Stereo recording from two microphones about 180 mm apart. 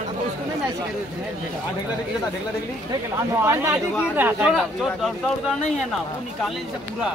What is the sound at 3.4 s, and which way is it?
Speech, 15° right (ahead or behind).